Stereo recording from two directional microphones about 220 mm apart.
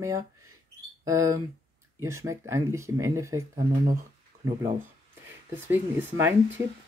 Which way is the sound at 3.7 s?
25° right (ahead or behind).